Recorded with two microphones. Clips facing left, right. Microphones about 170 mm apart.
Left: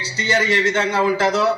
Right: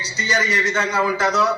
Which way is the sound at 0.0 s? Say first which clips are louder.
Left 3 dB; 25° left (ahead or behind).